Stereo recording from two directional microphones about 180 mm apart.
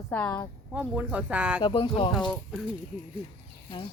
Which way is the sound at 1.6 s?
25° left (ahead or behind).